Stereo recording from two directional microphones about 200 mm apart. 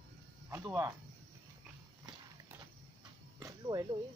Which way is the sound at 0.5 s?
15° right (ahead or behind).